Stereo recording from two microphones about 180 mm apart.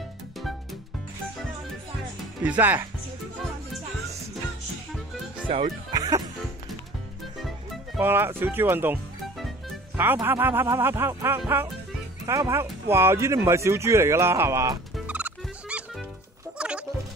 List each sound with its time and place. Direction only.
2.4 s speech: 10° right (ahead or behind)
5.5 s speech: 30° right (ahead or behind)
5.9 s music: 20° right (ahead or behind)
7.4 s music: centre (ahead or behind)
8.0 s speech: 10° right (ahead or behind)
16.5 s music: 5° right (ahead or behind)